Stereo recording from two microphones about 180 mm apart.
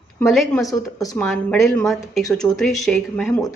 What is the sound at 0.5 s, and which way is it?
Speech, 20° left (ahead or behind).